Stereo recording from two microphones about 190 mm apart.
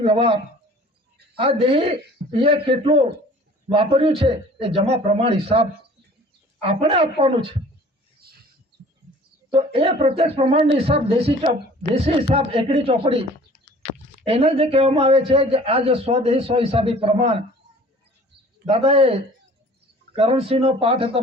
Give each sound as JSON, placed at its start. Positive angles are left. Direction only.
{"t": 0.0, "sound": "a man's voice", "side_deg": -30}
{"t": 1.4, "sound": "a man's voice", "side_deg": -30}
{"t": 8.2, "sound": "a sound", "side_deg": -55}
{"t": 9.5, "sound": "a man's voice", "side_deg": -30}
{"t": 14.3, "sound": "a man's voice", "side_deg": -30}
{"t": 18.7, "sound": "a man's voice", "side_deg": -30}